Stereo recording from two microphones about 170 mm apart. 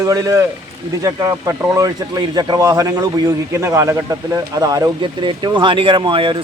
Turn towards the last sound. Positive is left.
turn(degrees=-30)  # may be behind; listen again after turning